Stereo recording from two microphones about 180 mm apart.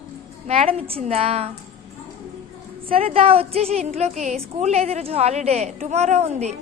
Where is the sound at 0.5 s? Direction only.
35° right (ahead or behind).